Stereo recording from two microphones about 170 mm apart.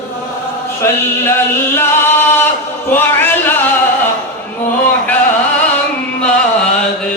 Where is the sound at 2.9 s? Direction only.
10° left (ahead or behind).